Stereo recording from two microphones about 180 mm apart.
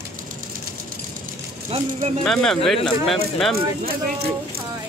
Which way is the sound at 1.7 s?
35° right (ahead or behind).